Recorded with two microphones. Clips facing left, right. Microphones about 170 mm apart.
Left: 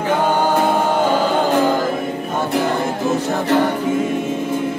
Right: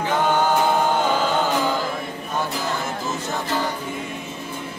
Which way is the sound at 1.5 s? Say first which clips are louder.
Left 6 dB; 55° left (ahead or behind).